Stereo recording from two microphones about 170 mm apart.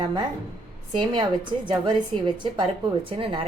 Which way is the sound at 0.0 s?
25° right (ahead or behind).